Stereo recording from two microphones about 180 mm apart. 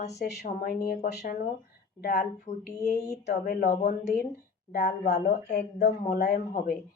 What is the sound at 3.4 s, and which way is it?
Speech, 55° left (ahead or behind).